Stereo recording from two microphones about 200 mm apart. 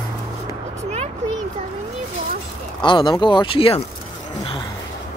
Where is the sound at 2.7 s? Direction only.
25° left (ahead or behind).